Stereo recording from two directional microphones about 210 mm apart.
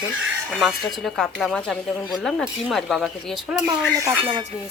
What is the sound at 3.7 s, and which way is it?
Speech, 15° right (ahead or behind).